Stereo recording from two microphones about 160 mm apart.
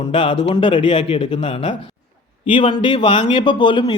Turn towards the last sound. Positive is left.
turn(degrees=30)  # may be behind; listen again after turning